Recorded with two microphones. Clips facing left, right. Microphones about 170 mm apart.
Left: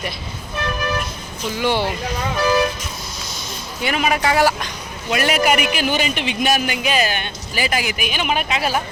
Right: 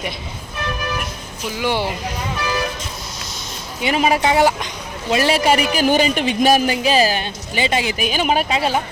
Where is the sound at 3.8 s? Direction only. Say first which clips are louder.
Right 3 dB; 30° right (ahead or behind).